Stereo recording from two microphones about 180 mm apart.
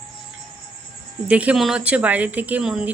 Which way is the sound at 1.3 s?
10° right (ahead or behind).